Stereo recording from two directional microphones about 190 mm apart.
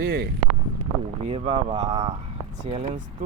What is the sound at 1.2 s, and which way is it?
Speech, 30° right (ahead or behind).